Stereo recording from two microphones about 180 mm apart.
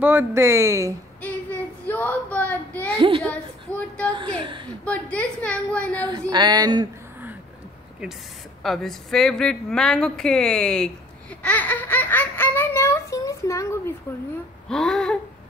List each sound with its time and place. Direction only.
0.0 s speech: 10° right (ahead or behind)
1.2 s speech: 10° left (ahead or behind)
4.1 s speech: 25° right (ahead or behind)
4.8 s a woman's voice: 5° left (ahead or behind)
6.3 s speech: 25° right (ahead or behind)
8.6 s a woman's voice: centre (ahead or behind)
14.7 s a sound: 5° left (ahead or behind)